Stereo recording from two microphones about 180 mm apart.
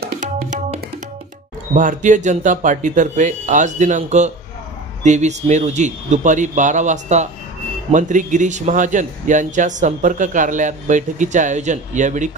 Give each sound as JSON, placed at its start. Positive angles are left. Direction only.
{"t": 0.2, "sound": "music", "side_deg": -45}
{"t": 1.8, "sound": "a man's voice", "side_deg": -45}